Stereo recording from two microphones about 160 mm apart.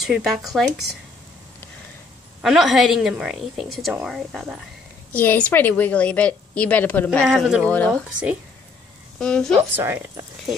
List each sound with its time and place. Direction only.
0.0 s a woman's voice: centre (ahead or behind)
2.4 s a woman's voice: centre (ahead or behind)
5.1 s a woman's voice: 10° left (ahead or behind)
7.2 s a woman's voice: 5° right (ahead or behind)
7.6 s a woman's voice: 10° left (ahead or behind)
9.2 s a woman's voice: 5° left (ahead or behind)
9.6 s speech: 15° right (ahead or behind)